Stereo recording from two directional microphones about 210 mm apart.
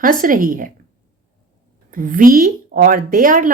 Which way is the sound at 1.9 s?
40° right (ahead or behind).